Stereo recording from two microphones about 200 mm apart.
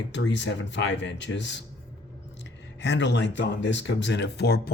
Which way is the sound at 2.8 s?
60° left (ahead or behind).